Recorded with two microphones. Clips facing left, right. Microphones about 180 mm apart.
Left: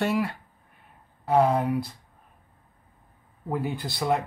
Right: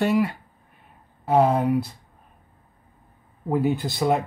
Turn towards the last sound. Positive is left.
turn(degrees=-20)  # may be behind; listen again after turning